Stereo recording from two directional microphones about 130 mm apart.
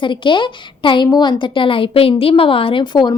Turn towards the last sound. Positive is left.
turn(degrees=35)  # may be behind; listen again after turning